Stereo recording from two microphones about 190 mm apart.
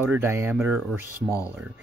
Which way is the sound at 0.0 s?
10° right (ahead or behind).